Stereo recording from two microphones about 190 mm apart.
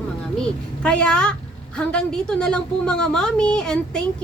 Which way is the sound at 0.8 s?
5° left (ahead or behind).